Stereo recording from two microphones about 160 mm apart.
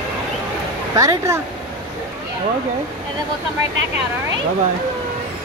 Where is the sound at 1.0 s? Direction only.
20° right (ahead or behind).